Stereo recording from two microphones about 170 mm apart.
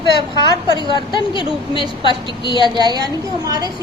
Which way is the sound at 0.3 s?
25° left (ahead or behind).